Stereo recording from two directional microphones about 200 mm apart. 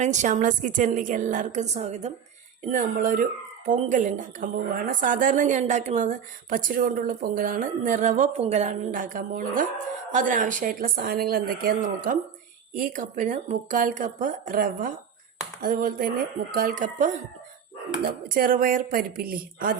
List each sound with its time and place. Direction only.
0.0 s speech: 35° right (ahead or behind)